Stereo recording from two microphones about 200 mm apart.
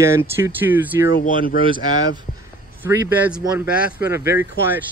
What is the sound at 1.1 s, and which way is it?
Speech, 45° left (ahead or behind).